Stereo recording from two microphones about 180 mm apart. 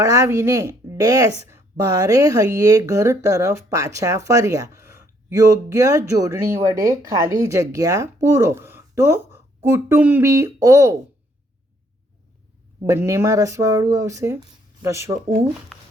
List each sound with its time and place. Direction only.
0.0 s speech: 15° right (ahead or behind)
12.8 s speech: 15° right (ahead or behind)
15.7 s a sound: centre (ahead or behind)